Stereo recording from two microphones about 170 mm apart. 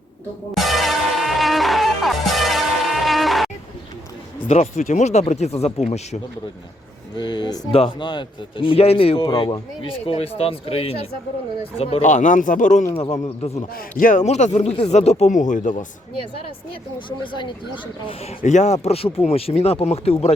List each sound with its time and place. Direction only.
0.5 s music: centre (ahead or behind)
4.4 s speech: 40° left (ahead or behind)
7.2 s speech: 25° left (ahead or behind)
13.7 s speech: 50° left (ahead or behind)
17.1 s speech: 30° left (ahead or behind)
18.3 s speech: 45° left (ahead or behind)